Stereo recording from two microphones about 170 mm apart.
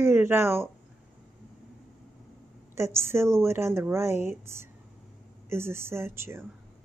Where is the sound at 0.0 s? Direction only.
15° right (ahead or behind).